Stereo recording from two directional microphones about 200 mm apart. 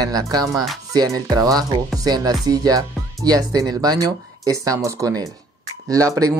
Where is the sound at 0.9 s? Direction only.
20° right (ahead or behind).